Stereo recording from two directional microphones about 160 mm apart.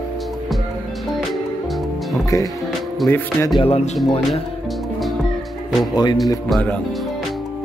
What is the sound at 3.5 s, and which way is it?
Speech, 40° left (ahead or behind).